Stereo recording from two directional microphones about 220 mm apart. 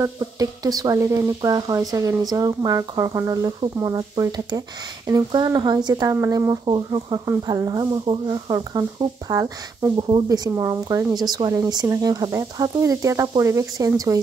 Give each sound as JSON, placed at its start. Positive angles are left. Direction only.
{"t": 0.0, "sound": "speech", "side_deg": -15}